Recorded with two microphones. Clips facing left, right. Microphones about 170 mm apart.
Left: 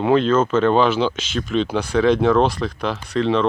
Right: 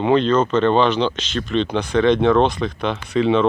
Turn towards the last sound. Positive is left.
turn(degrees=-5)  # may be behind; listen again after turning